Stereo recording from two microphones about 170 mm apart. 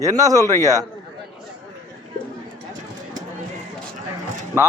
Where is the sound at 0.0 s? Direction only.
20° right (ahead or behind).